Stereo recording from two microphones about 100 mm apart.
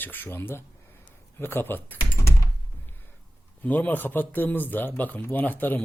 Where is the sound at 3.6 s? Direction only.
15° left (ahead or behind).